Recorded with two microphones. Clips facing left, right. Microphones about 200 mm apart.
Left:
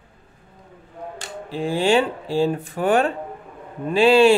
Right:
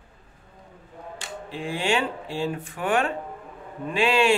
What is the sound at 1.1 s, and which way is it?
Speech, 35° left (ahead or behind).